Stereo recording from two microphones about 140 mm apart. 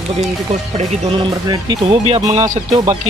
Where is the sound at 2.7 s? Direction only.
30° right (ahead or behind).